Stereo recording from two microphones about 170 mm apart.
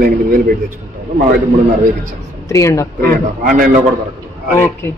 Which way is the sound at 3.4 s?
55° right (ahead or behind).